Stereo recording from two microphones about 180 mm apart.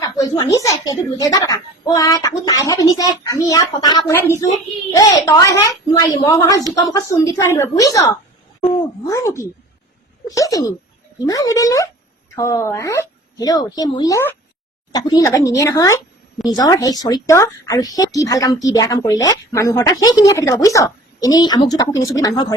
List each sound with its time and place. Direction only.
0.0 s a woman's voice: 20° left (ahead or behind)